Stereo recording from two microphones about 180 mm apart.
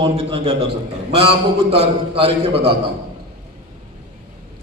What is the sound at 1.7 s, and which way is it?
Speech, 30° right (ahead or behind).